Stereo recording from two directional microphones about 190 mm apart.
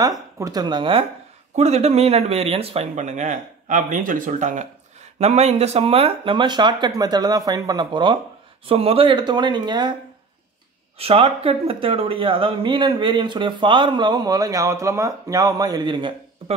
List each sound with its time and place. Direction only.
0.0 s speech: 20° right (ahead or behind)
1.5 s speech: 35° right (ahead or behind)
11.0 s speech: 30° right (ahead or behind)